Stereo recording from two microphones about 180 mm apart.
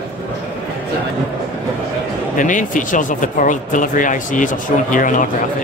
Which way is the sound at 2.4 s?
45° left (ahead or behind).